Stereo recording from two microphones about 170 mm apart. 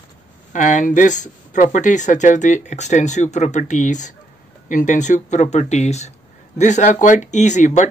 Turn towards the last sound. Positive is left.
turn(degrees=45)  # may be behind; listen again after turning